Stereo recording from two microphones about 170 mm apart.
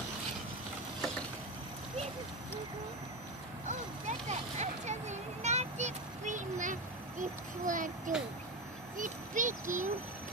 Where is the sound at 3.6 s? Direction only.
45° right (ahead or behind).